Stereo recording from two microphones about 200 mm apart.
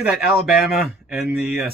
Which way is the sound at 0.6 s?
Centre (ahead or behind).